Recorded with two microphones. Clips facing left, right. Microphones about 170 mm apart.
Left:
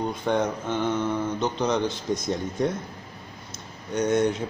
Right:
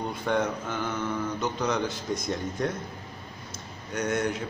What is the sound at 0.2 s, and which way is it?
Speech, 20° left (ahead or behind).